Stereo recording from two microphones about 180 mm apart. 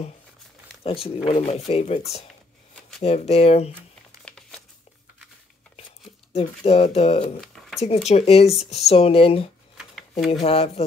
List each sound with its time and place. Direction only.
0.8 s speech: 30° left (ahead or behind)
3.0 s speech: 35° left (ahead or behind)
4.2 s crumpling: 5° left (ahead or behind)
6.3 s speech: 35° left (ahead or behind)
7.3 s a sound: centre (ahead or behind)
7.8 s speech: 35° left (ahead or behind)